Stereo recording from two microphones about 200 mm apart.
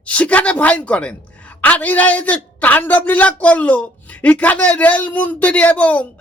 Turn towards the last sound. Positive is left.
turn(degrees=5)  # may be behind; listen again after turning